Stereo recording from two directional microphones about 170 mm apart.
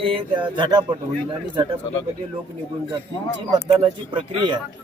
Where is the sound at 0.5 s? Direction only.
25° right (ahead or behind).